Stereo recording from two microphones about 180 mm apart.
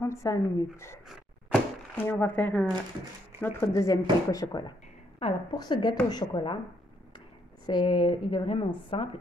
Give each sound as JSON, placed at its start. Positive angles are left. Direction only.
{"t": 0.0, "sound": "speech", "side_deg": 15}
{"t": 1.0, "sound": "a sound", "side_deg": 10}
{"t": 3.3, "sound": "a woman's voice", "side_deg": 10}
{"t": 7.6, "sound": "a woman's voice", "side_deg": 25}